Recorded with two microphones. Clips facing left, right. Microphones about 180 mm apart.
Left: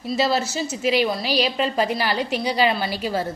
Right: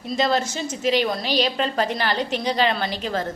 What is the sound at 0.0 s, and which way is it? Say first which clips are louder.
A woman's voice: even; 5° left (ahead or behind).